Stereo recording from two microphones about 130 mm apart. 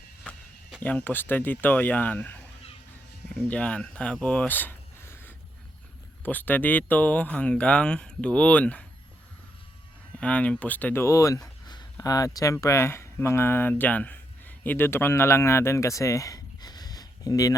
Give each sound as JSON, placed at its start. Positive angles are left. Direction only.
{"t": 0.8, "sound": "speech", "side_deg": 15}
{"t": 10.2, "sound": "speech", "side_deg": 10}